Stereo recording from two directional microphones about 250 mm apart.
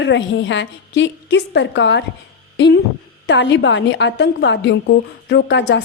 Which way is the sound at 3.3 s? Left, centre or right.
Left.